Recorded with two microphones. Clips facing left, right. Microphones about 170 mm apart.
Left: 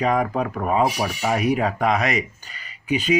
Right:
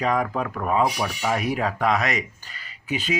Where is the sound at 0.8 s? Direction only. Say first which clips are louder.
Left 2 dB; 25° left (ahead or behind).